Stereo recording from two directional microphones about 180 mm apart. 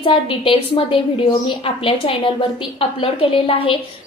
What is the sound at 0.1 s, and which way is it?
A woman's voice, 30° left (ahead or behind).